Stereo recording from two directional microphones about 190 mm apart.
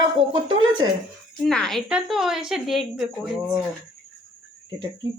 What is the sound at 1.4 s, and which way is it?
A woman's voice, 5° left (ahead or behind).